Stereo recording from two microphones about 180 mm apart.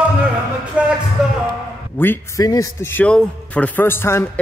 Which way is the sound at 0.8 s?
5° right (ahead or behind).